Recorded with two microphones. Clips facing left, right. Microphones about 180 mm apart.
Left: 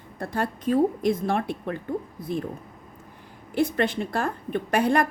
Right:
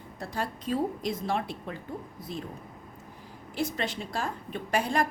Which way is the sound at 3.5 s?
55° left (ahead or behind).